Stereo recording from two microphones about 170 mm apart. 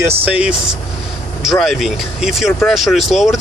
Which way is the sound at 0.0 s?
10° right (ahead or behind).